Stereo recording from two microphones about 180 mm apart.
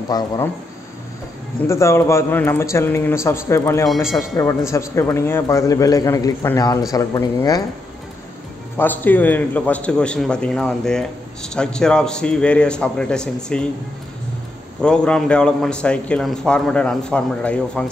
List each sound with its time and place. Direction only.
0.1 s speech: 20° left (ahead or behind)
1.7 s a man's voice: 15° left (ahead or behind)
3.9 s a man's voice: centre (ahead or behind)
4.4 s a man's voice: 15° left (ahead or behind)
8.7 s a man's voice: 10° left (ahead or behind)
14.8 s a man's voice: 5° left (ahead or behind)